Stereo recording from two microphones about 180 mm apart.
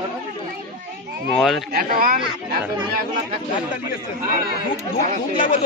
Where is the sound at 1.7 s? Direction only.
55° right (ahead or behind).